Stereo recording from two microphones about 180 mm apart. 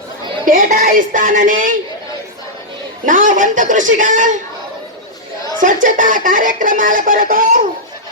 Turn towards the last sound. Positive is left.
turn(degrees=-50)  # may be behind; listen again after turning